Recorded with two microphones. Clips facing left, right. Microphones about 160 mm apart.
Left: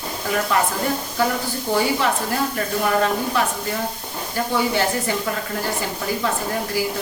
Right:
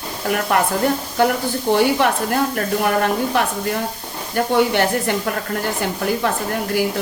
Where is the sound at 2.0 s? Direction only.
55° right (ahead or behind).